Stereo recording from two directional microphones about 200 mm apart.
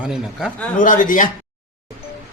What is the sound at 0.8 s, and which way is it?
Speech, 40° left (ahead or behind).